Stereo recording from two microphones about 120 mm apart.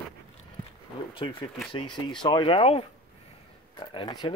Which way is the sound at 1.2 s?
45° left (ahead or behind).